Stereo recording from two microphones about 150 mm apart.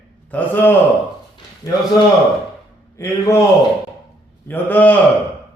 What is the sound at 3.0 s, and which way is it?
Speech, 20° left (ahead or behind).